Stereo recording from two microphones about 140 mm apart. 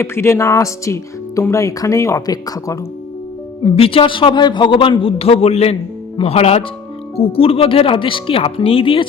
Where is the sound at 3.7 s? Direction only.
40° left (ahead or behind).